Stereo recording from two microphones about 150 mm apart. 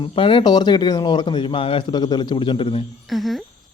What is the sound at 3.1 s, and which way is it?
Speech, centre (ahead or behind).